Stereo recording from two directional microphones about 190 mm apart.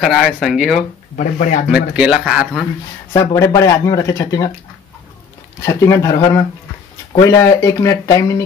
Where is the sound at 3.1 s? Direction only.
15° left (ahead or behind).